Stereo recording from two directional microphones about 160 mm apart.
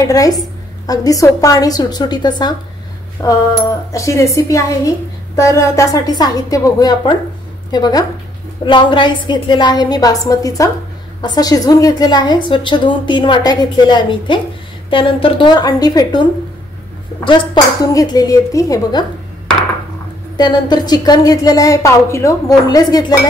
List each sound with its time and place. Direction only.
0.1 s a woman's voice: 20° left (ahead or behind)
17.9 s a woman's voice: 20° left (ahead or behind)
20.3 s a woman's voice: 25° left (ahead or behind)